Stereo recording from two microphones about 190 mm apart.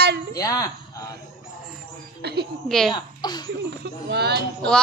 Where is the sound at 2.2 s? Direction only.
60° right (ahead or behind).